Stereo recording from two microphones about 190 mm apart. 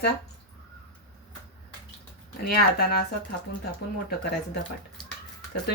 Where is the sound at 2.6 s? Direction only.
55° left (ahead or behind).